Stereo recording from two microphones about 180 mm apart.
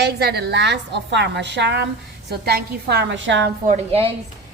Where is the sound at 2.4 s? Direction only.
65° right (ahead or behind); by 3.5 s 90° right.